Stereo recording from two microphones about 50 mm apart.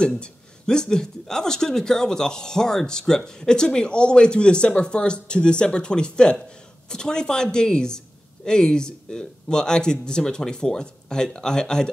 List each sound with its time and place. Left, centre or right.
0.0 s speech: centre